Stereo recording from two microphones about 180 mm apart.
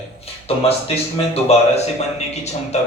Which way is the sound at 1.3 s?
35° left (ahead or behind).